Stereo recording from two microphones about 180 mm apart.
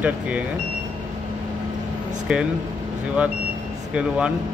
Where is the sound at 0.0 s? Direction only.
10° right (ahead or behind).